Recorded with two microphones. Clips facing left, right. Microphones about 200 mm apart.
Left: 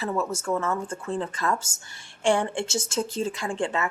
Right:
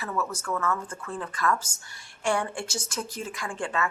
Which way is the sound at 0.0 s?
25° left (ahead or behind).